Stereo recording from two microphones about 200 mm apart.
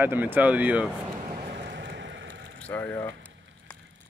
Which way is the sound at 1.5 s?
55° right (ahead or behind).